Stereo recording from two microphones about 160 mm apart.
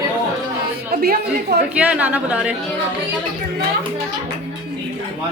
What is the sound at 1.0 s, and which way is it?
Speech, 80° right.